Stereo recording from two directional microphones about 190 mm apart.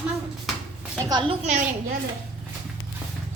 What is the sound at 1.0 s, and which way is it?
Speech, 25° right (ahead or behind).